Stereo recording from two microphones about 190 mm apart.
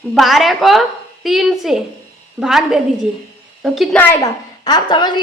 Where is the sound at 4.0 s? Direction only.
10° left (ahead or behind).